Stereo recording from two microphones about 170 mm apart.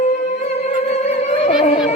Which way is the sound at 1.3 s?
40° left (ahead or behind).